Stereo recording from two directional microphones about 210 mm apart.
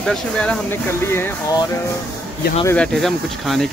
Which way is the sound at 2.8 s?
Centre (ahead or behind).